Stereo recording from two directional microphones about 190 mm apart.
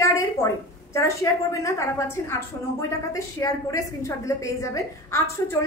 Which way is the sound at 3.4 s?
15° left (ahead or behind).